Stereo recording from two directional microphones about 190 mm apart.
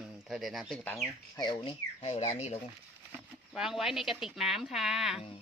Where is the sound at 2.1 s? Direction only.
35° left (ahead or behind).